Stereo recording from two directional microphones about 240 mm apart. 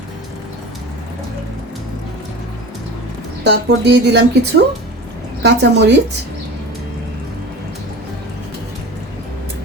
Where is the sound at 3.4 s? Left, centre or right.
Right.